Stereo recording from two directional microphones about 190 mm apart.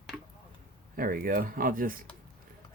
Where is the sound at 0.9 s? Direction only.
50° right (ahead or behind).